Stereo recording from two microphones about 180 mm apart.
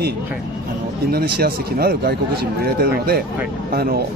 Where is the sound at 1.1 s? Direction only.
60° right (ahead or behind).